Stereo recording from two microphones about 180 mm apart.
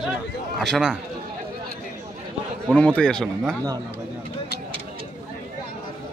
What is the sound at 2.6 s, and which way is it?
Speech, 5° left (ahead or behind).